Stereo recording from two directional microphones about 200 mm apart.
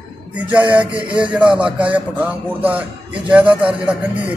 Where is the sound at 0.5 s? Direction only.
5° right (ahead or behind).